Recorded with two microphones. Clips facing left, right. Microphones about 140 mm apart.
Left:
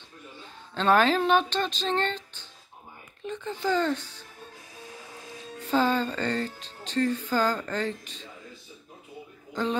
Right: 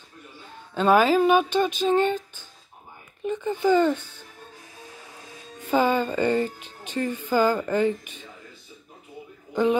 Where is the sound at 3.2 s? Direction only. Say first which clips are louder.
Right 7 dB; 5° right (ahead or behind).